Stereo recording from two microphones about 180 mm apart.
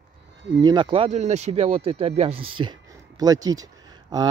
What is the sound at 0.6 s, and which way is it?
Speech, 25° right (ahead or behind).